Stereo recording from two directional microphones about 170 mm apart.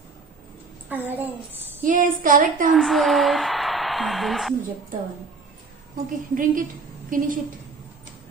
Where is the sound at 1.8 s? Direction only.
55° right (ahead or behind).